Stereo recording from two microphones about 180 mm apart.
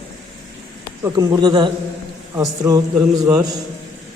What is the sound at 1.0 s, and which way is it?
A man's voice, 20° right (ahead or behind).